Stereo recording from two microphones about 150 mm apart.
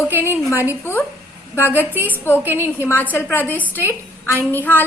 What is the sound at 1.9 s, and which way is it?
Speech, 15° right (ahead or behind).